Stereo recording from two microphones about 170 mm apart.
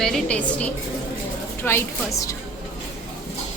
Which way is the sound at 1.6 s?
15° left (ahead or behind).